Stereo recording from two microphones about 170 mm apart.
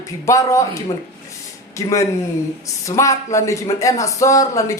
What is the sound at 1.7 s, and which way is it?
Speech, 20° left (ahead or behind).